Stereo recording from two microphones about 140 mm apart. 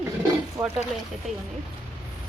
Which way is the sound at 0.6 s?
20° right (ahead or behind).